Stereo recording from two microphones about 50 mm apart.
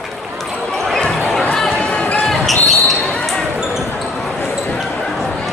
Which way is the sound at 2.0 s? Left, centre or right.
Left.